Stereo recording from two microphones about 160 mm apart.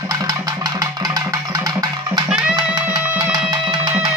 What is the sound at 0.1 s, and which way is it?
Music, 20° right (ahead or behind).